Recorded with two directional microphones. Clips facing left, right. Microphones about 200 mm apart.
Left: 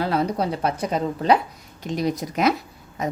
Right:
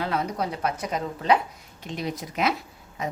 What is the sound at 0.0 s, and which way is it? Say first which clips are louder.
A woman's voice: left 5 dB; 35° left (ahead or behind).